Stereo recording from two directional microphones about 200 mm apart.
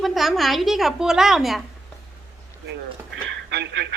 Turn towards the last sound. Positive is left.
turn(degrees=-60)  # may be behind; listen again after turning